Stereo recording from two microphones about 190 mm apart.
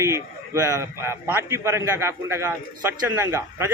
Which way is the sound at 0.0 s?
15° right (ahead or behind).